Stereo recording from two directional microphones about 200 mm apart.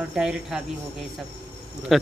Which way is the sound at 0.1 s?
5° right (ahead or behind).